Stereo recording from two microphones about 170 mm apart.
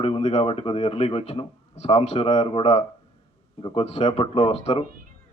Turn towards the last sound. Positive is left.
turn(degrees=35)  # may be behind; listen again after turning